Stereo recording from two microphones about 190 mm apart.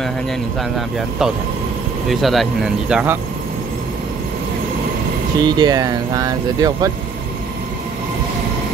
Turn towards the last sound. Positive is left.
turn(degrees=-20)  # may be behind; listen again after turning